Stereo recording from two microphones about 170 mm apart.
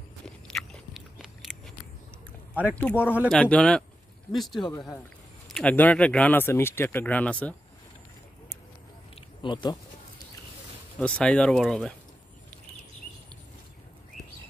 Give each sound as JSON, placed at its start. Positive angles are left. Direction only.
{"t": 0.5, "sound": "biting", "side_deg": 0}
{"t": 2.7, "sound": "speech", "side_deg": 10}
{"t": 4.7, "sound": "speech", "side_deg": 15}
{"t": 9.4, "sound": "speech", "side_deg": 25}
{"t": 11.0, "sound": "speech", "side_deg": 5}